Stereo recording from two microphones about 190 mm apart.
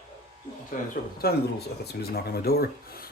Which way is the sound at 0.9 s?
55° left (ahead or behind).